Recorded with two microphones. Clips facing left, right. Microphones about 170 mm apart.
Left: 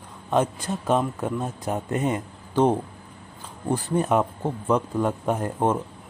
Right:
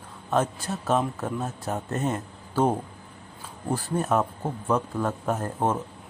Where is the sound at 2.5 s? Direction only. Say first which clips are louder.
Left 3 dB; 5° right (ahead or behind).